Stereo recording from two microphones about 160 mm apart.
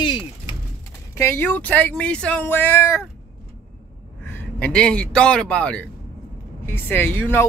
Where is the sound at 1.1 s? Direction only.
15° left (ahead or behind).